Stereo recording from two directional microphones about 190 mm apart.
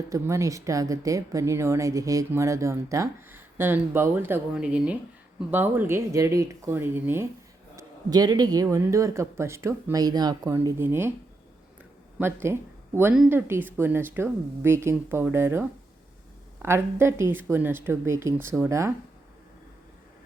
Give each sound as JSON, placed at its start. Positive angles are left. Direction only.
{"t": 0.1, "sound": "speech", "side_deg": -15}
{"t": 12.2, "sound": "speech", "side_deg": -15}
{"t": 16.6, "sound": "speech", "side_deg": -15}